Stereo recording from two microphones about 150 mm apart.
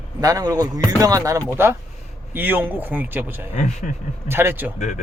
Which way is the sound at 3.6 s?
50° left (ahead or behind).